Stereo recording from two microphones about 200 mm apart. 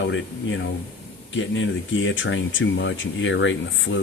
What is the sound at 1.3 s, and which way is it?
Speech, 70° left (ahead or behind).